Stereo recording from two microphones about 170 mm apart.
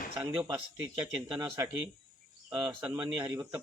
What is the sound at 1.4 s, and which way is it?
Speech, 20° right (ahead or behind).